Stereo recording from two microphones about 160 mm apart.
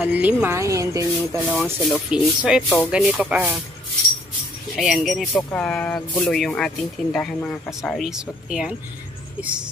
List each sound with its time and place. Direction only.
0.0 s speech: 10° right (ahead or behind)
1.5 s speech: 5° right (ahead or behind)
4.7 s speech: centre (ahead or behind)